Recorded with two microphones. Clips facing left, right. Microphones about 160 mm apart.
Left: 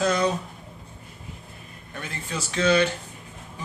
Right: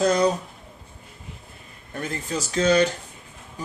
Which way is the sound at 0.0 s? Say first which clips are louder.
Right 3 dB; 40° right (ahead or behind).